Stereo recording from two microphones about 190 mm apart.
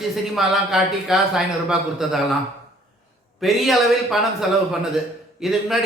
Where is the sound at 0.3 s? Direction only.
Centre (ahead or behind).